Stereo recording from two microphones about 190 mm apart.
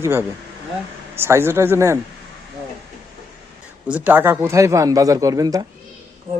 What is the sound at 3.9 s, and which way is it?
Speech, 10° right (ahead or behind).